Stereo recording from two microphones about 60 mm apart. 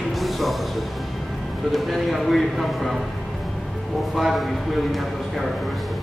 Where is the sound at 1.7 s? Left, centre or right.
Centre.